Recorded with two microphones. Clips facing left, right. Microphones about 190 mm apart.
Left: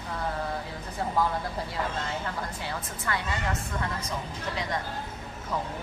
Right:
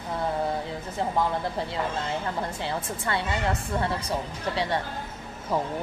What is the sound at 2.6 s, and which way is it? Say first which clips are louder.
Speech: right 4 dB; 30° right (ahead or behind).